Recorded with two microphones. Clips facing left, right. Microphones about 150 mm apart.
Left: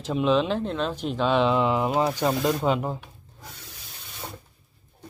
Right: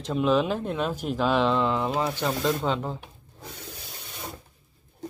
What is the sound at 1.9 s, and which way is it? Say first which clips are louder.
Speech: left 3 dB; 20° left (ahead or behind).